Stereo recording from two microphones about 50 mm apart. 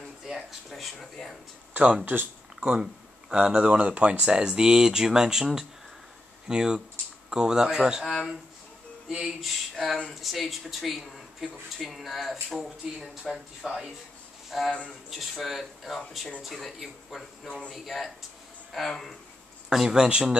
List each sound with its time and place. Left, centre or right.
0.3 s speech: centre
1.7 s speech: right
2.6 s speech: centre
9.4 s speech: centre
13.6 s speech: centre
14.5 s speech: centre
19.7 s speech: centre